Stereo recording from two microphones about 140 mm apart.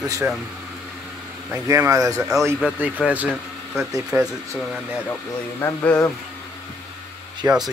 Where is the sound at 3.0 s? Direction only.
10° right (ahead or behind).